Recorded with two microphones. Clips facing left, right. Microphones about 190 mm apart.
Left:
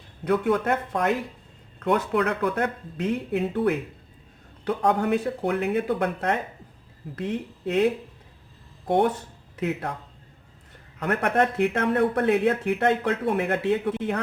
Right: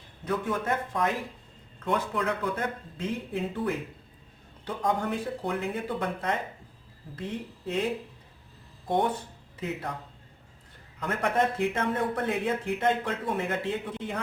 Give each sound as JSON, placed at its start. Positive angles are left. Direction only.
{"t": 0.3, "sound": "speech", "side_deg": 65}
{"t": 9.6, "sound": "speech", "side_deg": 65}
{"t": 11.0, "sound": "speech", "side_deg": 65}